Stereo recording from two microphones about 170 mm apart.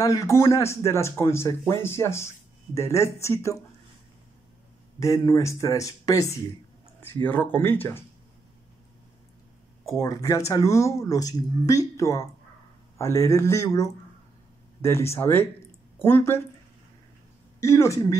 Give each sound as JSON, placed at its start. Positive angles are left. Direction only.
{"t": 0.0, "sound": "speech", "side_deg": 20}
{"t": 5.0, "sound": "speech", "side_deg": 20}
{"t": 9.9, "sound": "speech", "side_deg": 20}
{"t": 17.6, "sound": "speech", "side_deg": 15}